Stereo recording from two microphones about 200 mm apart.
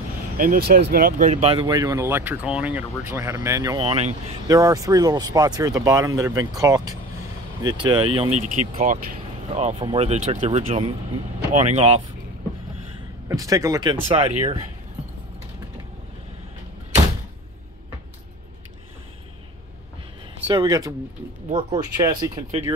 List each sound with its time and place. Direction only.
0.4 s speech: 50° right (ahead or behind); by 3.8 s 15° right (ahead or behind)
3.8 s speech: 30° right (ahead or behind)
4.5 s speech: 15° right (ahead or behind)
8.4 s speech: 40° right (ahead or behind)
13.3 s speech: 15° right (ahead or behind)
20.4 s speech: 20° right (ahead or behind)
21.5 s speech: 30° right (ahead or behind)
21.7 s speech: 20° right (ahead or behind)